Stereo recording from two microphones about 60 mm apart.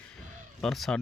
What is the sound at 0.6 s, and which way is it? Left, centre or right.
Speech, centre.